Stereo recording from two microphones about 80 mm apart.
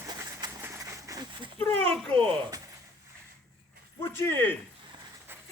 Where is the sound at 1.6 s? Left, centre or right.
Centre.